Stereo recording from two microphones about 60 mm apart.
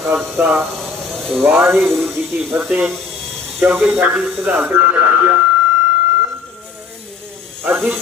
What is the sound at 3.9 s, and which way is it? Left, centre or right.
Speech, right.